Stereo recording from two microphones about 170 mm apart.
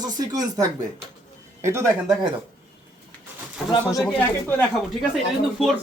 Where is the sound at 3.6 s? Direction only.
20° left (ahead or behind).